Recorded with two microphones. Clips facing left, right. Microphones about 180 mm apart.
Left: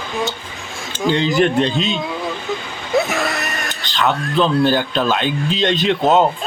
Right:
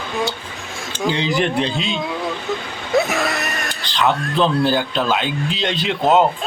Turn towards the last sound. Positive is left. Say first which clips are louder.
# left 1 dB
turn(degrees=-10)  # may be behind; listen again after turning